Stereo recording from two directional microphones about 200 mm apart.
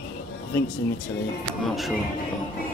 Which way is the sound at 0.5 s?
10° left (ahead or behind).